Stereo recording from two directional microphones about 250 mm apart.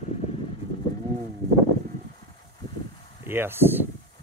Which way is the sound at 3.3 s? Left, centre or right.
Centre.